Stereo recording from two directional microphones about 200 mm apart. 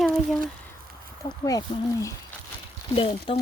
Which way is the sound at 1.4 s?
20° left (ahead or behind).